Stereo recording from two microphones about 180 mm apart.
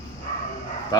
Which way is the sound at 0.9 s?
20° left (ahead or behind).